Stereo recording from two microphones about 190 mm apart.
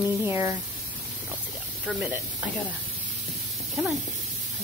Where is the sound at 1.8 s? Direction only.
5° right (ahead or behind).